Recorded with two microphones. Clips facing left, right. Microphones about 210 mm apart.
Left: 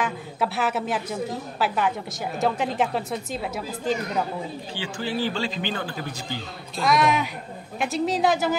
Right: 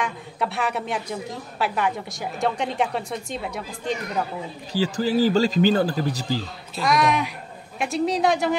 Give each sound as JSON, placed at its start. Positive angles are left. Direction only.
{"t": 0.0, "sound": "a woman's voice", "side_deg": 5}
{"t": 4.7, "sound": "speech", "side_deg": -40}
{"t": 6.8, "sound": "a woman's voice", "side_deg": 0}